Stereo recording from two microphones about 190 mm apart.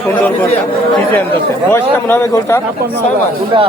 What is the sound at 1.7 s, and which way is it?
Speech, 15° left (ahead or behind).